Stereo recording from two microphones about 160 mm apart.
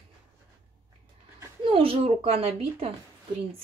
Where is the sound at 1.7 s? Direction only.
35° right (ahead or behind).